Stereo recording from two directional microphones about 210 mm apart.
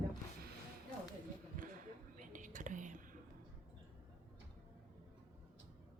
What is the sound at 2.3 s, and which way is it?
Whispering, 35° right (ahead or behind).